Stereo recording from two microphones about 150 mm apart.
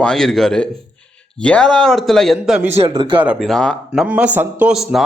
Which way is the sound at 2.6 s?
45° right (ahead or behind).